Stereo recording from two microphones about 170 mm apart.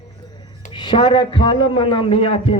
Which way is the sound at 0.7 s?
30° left (ahead or behind).